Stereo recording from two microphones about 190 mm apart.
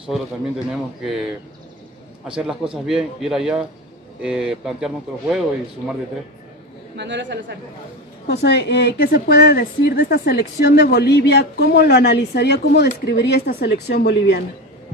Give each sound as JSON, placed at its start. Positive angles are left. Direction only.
{"t": 0.1, "sound": "a man's voice", "side_deg": 0}
{"t": 2.3, "sound": "a man's voice", "side_deg": -5}
{"t": 7.0, "sound": "a man's voice", "side_deg": -70}
{"t": 8.3, "sound": "speech", "side_deg": 65}